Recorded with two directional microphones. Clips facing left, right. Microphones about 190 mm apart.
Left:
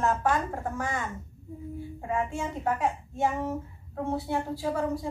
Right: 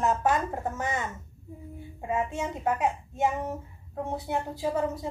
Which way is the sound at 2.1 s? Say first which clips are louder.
Right 1 dB; 20° right (ahead or behind).